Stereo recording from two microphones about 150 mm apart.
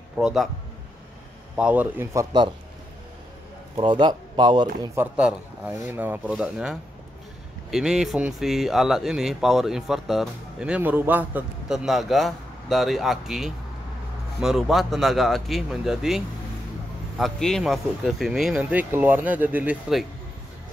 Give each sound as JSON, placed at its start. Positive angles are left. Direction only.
{"t": 0.2, "sound": "speech", "side_deg": 0}
{"t": 1.6, "sound": "speech", "side_deg": -10}
{"t": 3.7, "sound": "speech", "side_deg": -30}
{"t": 4.9, "sound": "speech", "side_deg": -10}
{"t": 17.2, "sound": "speech", "side_deg": 5}